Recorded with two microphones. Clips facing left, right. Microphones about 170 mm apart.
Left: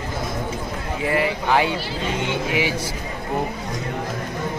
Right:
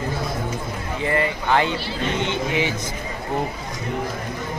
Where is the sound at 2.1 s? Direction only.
10° left (ahead or behind).